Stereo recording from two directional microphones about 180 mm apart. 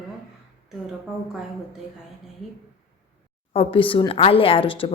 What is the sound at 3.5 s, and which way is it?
A woman's voice, 30° left (ahead or behind).